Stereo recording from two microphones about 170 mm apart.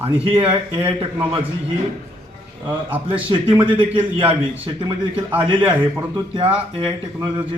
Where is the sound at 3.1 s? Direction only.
30° right (ahead or behind).